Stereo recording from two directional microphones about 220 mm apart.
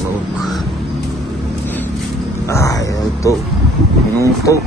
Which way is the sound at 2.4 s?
15° left (ahead or behind).